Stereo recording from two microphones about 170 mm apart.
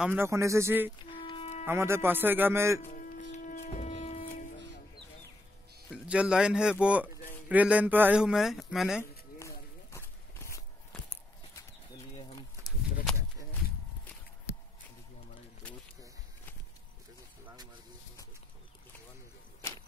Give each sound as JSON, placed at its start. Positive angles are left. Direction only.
{"t": 0.0, "sound": "speech", "side_deg": -10}
{"t": 1.1, "sound": "music", "side_deg": 30}
{"t": 1.7, "sound": "speech", "side_deg": -15}
{"t": 2.8, "sound": "music", "side_deg": 50}
{"t": 6.0, "sound": "a man's voice", "side_deg": -5}
{"t": 9.4, "sound": "a sound", "side_deg": 15}
{"t": 14.5, "sound": "a sound", "side_deg": 15}